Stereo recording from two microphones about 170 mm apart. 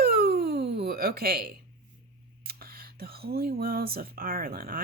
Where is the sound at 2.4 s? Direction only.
60° right (ahead or behind).